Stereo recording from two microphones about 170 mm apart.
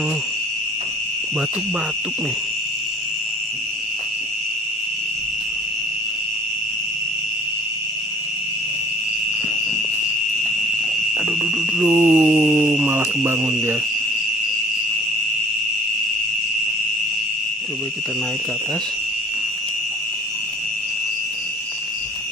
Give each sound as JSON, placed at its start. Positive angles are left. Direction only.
{"t": 11.1, "sound": "mantra", "side_deg": 0}